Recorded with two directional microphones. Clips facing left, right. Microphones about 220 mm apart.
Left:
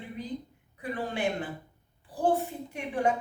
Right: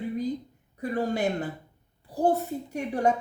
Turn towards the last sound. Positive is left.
turn(degrees=-40)  # may be behind; listen again after turning